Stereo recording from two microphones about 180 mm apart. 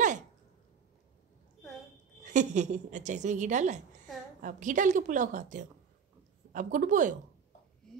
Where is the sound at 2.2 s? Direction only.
40° right (ahead or behind).